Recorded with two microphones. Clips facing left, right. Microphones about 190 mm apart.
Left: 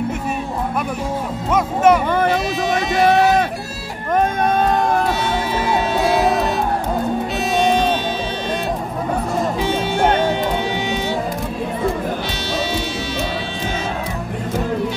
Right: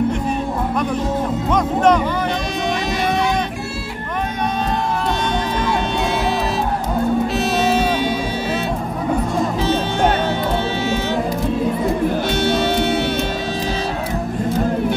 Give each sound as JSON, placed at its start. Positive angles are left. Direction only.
{"t": 1.5, "sound": "speech", "side_deg": 5}
{"t": 4.1, "sound": "a sound", "side_deg": 50}
{"t": 7.3, "sound": "music", "side_deg": -5}
{"t": 9.6, "sound": "music", "side_deg": 10}
{"t": 12.4, "sound": "music", "side_deg": -55}